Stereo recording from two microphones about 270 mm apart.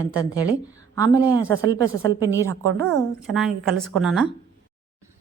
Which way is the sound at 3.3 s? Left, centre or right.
Centre.